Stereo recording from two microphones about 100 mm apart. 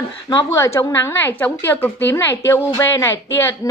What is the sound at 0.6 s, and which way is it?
A woman's voice, 30° left (ahead or behind).